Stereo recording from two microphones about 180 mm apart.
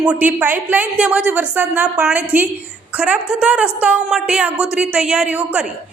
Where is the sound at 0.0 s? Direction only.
5° right (ahead or behind).